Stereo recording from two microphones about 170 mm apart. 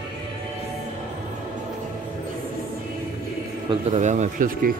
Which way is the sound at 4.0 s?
45° right (ahead or behind).